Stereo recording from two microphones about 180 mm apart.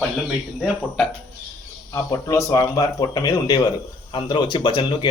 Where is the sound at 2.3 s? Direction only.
15° left (ahead or behind).